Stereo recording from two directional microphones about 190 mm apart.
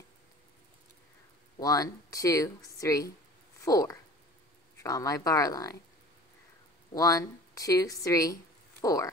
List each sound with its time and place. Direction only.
1.6 s speech: 20° left (ahead or behind)
6.9 s speech: 20° left (ahead or behind)